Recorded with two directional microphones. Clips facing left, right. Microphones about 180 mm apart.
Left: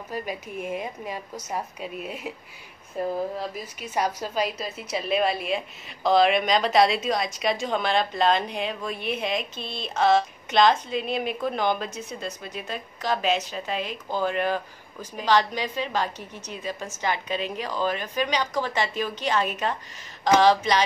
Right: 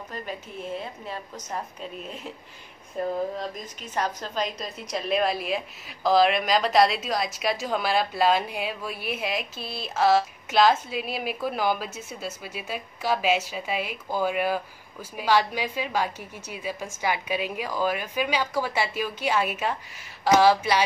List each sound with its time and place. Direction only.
0.1 s a woman's voice: 10° left (ahead or behind); by 20.8 s 10° right (ahead or behind)